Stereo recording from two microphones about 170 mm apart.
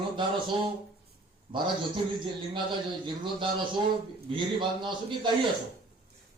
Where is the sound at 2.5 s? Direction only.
30° right (ahead or behind).